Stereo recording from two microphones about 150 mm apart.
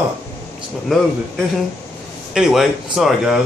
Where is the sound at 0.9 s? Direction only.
Centre (ahead or behind).